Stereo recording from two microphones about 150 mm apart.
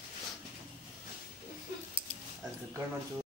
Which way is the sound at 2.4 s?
25° right (ahead or behind).